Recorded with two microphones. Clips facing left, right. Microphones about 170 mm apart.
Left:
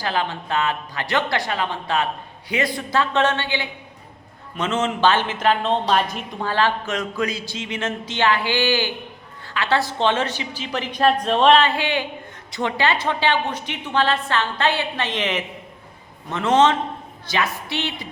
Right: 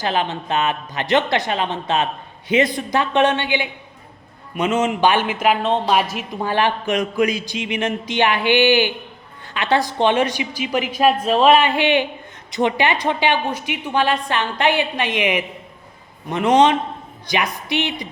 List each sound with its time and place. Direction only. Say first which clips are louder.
0.0 s a woman's voice: right 3 dB; 20° right (ahead or behind)
6.5 s a woman's voice: right 2 dB; 15° right (ahead or behind)